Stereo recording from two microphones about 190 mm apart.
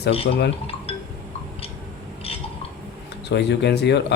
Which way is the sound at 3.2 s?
60° left (ahead or behind).